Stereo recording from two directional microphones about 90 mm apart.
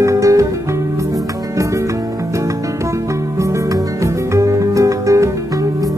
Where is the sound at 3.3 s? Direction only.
35° right (ahead or behind).